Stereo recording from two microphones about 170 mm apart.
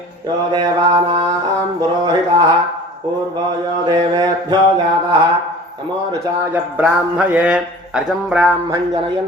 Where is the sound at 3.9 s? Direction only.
25° right (ahead or behind).